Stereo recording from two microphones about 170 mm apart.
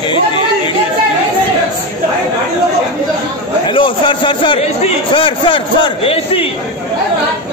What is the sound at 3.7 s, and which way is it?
A man's voice, 30° left (ahead or behind).